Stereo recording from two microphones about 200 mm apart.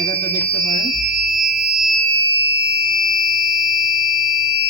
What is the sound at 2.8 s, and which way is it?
Fire alarm, 20° left (ahead or behind).